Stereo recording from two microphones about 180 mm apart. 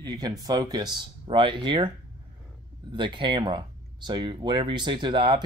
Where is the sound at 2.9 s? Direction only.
25° right (ahead or behind).